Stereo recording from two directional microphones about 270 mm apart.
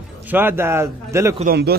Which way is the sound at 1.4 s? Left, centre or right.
Right.